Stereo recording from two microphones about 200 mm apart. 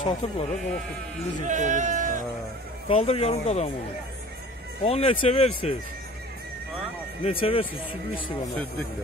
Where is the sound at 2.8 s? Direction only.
30° left (ahead or behind).